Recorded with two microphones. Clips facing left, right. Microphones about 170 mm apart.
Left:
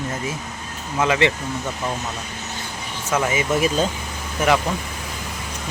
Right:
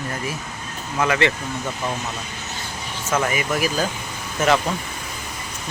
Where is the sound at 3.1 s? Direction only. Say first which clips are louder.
Left 2 dB; 20° left (ahead or behind).